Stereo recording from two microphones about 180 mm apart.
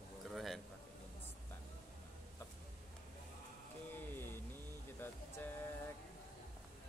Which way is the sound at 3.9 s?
10° left (ahead or behind).